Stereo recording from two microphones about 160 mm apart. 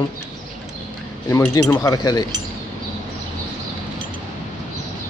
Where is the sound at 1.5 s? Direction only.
20° left (ahead or behind).